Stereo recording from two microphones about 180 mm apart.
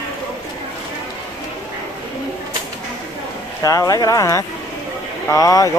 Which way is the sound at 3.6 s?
20° left (ahead or behind).